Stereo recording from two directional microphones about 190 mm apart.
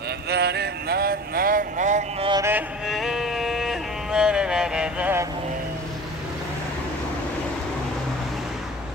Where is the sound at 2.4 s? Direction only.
10° right (ahead or behind).